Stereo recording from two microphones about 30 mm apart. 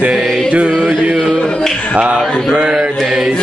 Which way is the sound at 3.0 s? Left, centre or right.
Right.